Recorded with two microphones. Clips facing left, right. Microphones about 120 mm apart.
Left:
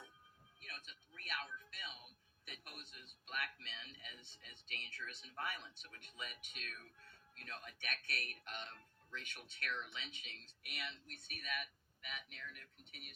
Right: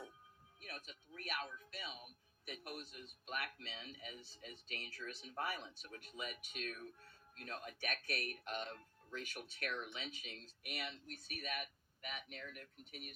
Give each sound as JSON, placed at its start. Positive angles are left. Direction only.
{"t": 0.6, "sound": "speech", "side_deg": -35}